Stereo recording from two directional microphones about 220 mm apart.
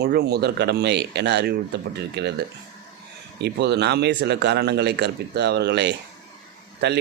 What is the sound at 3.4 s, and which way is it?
A man's voice, 50° right (ahead or behind).